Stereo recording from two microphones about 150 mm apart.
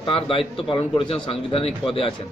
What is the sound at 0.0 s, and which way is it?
A man's voice, 35° left (ahead or behind).